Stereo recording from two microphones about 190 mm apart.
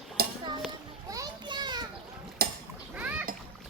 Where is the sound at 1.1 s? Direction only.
20° right (ahead or behind).